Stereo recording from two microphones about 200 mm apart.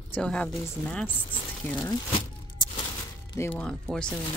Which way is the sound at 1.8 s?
20° left (ahead or behind).